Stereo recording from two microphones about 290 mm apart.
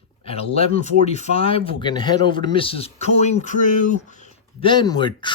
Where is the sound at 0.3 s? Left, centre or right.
Left.